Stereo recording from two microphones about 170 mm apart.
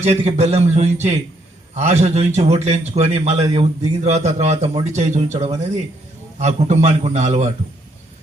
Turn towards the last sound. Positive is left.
turn(degrees=-40)  # may be behind; listen again after turning